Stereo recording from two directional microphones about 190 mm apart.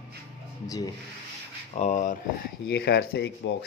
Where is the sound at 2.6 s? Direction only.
55° left (ahead or behind).